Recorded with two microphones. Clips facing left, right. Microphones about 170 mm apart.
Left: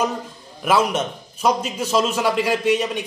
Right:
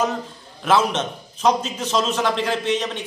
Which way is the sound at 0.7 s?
10° left (ahead or behind).